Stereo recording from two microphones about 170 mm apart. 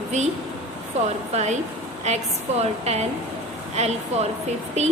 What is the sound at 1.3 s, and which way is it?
A woman's voice, 40° right (ahead or behind).